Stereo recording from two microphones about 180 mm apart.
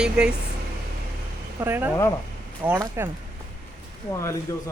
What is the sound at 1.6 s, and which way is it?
Speech, 10° right (ahead or behind).